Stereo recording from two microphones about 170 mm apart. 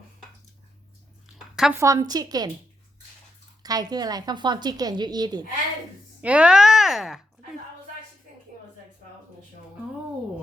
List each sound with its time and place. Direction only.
1.5 s speech: 5° right (ahead or behind)
1.8 s a woman's voice: 20° right (ahead or behind)
3.6 s a woman's voice: 25° right (ahead or behind)
6.2 s speech: 5° right (ahead or behind)